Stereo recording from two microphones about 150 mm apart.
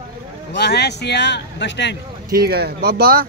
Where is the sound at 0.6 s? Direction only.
90° left.